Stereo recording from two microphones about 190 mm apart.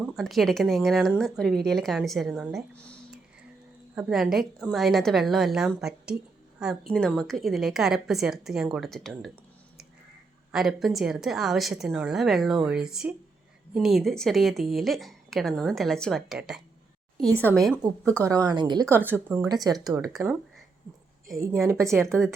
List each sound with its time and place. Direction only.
0.0 s speech: centre (ahead or behind)
10.5 s speech: centre (ahead or behind)
18.2 s speech: 20° right (ahead or behind)
18.9 s a woman's voice: 10° right (ahead or behind)
21.7 s a woman's voice: 15° right (ahead or behind)